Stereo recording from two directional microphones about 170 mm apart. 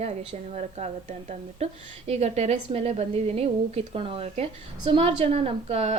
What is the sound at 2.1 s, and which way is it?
A woman's voice, 40° right (ahead or behind).